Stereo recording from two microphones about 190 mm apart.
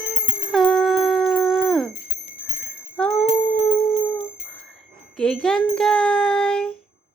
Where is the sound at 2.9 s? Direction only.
10° left (ahead or behind).